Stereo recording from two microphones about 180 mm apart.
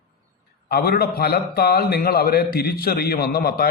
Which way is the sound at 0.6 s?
55° left (ahead or behind).